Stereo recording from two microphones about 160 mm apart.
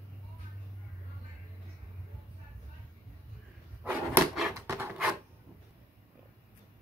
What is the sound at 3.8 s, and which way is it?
Drawer open or close, 5° right (ahead or behind).